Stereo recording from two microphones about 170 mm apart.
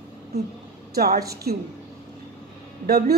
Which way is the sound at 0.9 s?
65° right (ahead or behind).